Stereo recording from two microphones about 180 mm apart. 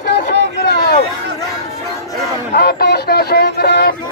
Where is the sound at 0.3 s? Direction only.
65° left (ahead or behind).